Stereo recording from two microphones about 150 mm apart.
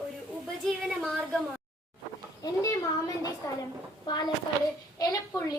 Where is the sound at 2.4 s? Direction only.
25° left (ahead or behind).